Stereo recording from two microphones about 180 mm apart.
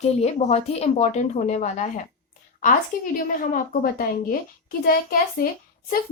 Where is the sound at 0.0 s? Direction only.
35° left (ahead or behind).